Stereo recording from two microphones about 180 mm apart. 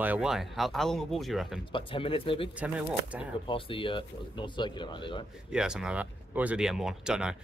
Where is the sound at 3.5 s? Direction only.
30° left (ahead or behind).